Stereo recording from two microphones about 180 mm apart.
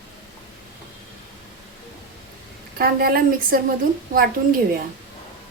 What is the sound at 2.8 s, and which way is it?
Speech, 55° right (ahead or behind).